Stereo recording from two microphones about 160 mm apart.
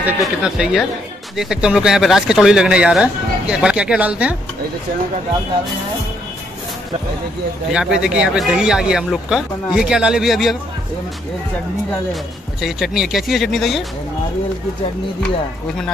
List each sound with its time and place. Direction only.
0.2 s speech: centre (ahead or behind)
7.7 s speech: 5° right (ahead or behind)
12.1 s speech: centre (ahead or behind)